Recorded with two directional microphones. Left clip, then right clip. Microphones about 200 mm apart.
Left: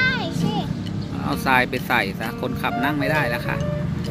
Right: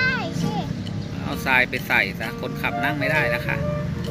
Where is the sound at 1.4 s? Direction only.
35° left (ahead or behind).